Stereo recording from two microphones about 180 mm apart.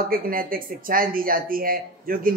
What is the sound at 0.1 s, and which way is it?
Speech, 50° right (ahead or behind).